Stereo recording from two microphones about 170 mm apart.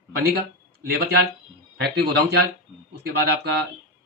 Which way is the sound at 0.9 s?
70° right (ahead or behind).